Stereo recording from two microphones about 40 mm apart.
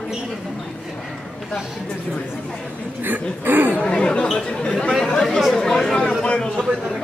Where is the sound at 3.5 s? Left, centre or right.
Right.